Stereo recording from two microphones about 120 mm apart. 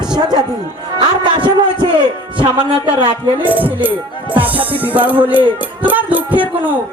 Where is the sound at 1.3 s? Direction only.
40° right (ahead or behind).